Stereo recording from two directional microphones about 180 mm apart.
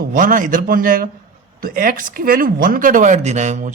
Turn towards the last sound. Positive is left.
turn(degrees=-40)  # may be behind; listen again after turning